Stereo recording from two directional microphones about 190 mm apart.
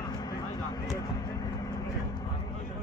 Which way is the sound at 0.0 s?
20° left (ahead or behind).